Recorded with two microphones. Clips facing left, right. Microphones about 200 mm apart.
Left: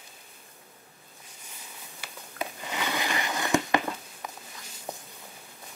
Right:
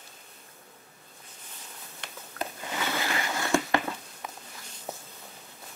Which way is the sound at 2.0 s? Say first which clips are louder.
Even; centre (ahead or behind).